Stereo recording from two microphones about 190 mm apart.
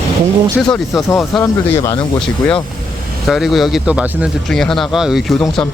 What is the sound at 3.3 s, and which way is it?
Speech, centre (ahead or behind).